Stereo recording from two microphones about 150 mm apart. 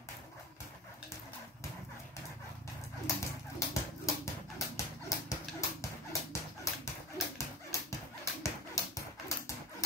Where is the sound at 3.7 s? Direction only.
20° left (ahead or behind).